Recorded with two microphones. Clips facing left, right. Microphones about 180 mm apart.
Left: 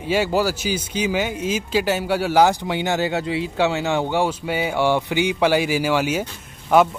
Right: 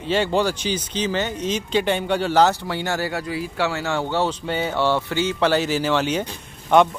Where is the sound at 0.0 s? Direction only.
10° left (ahead or behind).